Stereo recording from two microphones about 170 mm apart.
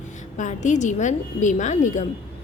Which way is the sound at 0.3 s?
45° left (ahead or behind).